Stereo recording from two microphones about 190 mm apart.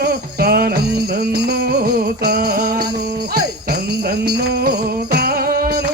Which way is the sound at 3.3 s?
55° right (ahead or behind).